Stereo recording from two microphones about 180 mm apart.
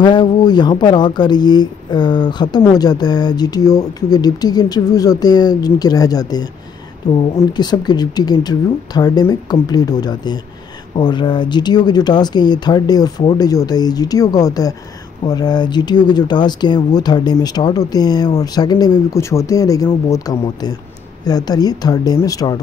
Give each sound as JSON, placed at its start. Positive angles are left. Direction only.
{"t": 0.0, "sound": "speech", "side_deg": 25}